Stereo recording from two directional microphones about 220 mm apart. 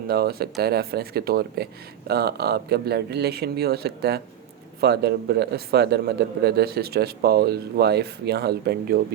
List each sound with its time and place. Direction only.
0.1 s speech: 45° right (ahead or behind)